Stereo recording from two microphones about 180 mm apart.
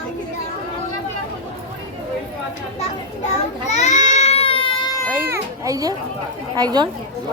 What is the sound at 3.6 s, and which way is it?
Baby cry, 40° left (ahead or behind).